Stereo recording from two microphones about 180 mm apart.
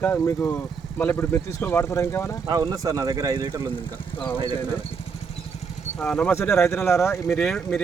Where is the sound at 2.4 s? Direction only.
20° right (ahead or behind).